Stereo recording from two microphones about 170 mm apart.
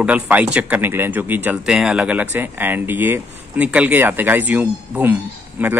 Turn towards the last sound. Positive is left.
turn(degrees=-10)  # may be behind; listen again after turning